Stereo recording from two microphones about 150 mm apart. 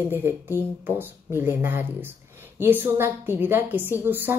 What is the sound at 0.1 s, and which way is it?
A woman's voice, 15° right (ahead or behind).